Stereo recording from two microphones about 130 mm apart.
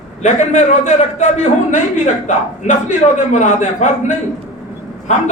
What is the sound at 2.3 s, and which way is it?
A man's voice, 70° left (ahead or behind).